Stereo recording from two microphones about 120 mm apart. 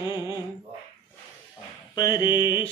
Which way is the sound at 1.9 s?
35° left (ahead or behind).